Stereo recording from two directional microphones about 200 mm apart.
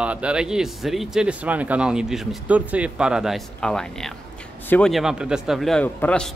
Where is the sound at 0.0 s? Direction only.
5° right (ahead or behind).